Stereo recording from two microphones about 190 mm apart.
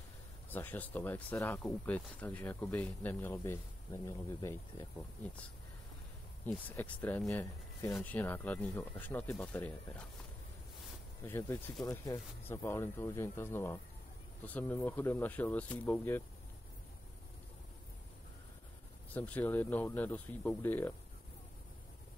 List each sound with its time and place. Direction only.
0.5 s speech: 10° left (ahead or behind)
6.4 s speech: 10° left (ahead or behind)
11.2 s speech: 10° left (ahead or behind)
19.1 s speech: 10° left (ahead or behind)